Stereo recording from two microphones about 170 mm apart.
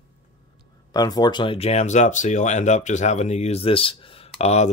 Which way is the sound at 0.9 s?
25° left (ahead or behind).